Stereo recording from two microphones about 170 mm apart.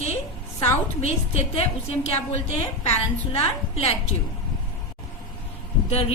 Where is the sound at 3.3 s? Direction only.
35° left (ahead or behind).